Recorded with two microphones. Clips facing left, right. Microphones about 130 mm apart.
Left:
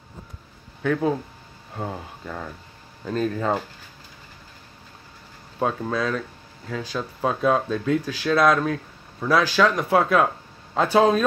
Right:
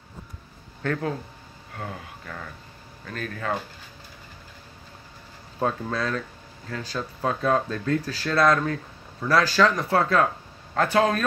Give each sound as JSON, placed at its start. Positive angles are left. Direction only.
{"t": 0.8, "sound": "speech", "side_deg": 10}
{"t": 1.8, "sound": "speech", "side_deg": 20}
{"t": 5.6, "sound": "speech", "side_deg": 5}
{"t": 10.0, "sound": "a sound", "side_deg": 10}
{"t": 10.8, "sound": "speech", "side_deg": 15}